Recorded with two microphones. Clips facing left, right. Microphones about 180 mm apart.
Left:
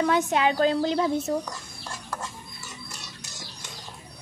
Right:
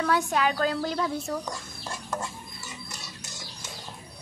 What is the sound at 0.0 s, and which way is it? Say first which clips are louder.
A woman's voice: left 3 dB; 20° left (ahead or behind).